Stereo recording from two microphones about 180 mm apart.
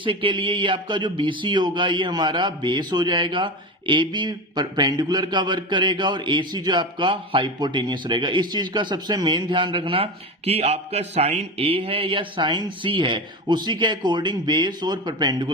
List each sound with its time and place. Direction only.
0.0 s a man's voice: 30° right (ahead or behind)